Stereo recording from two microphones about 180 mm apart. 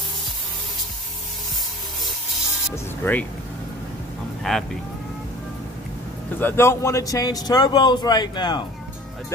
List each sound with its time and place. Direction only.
2.7 s speech: 10° left (ahead or behind)
4.4 s speech: centre (ahead or behind)
6.4 s speech: 15° left (ahead or behind)